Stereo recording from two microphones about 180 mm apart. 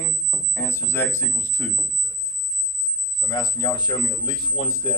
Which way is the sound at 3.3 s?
20° left (ahead or behind).